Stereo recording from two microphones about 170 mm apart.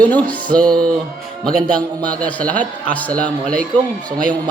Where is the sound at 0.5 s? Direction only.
5° left (ahead or behind).